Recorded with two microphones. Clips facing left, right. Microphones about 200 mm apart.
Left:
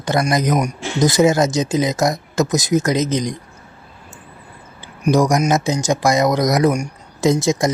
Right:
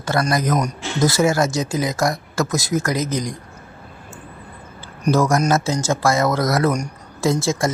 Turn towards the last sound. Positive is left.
turn(degrees=20)  # may be behind; listen again after turning